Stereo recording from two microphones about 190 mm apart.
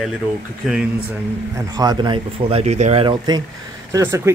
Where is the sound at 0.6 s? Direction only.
Centre (ahead or behind).